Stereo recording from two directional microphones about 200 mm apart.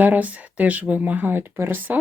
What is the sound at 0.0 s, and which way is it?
Speech, 10° right (ahead or behind).